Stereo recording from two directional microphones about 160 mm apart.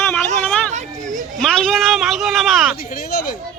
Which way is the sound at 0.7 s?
50° right (ahead or behind).